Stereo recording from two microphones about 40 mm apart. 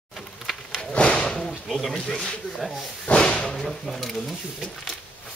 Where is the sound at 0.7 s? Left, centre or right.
Left.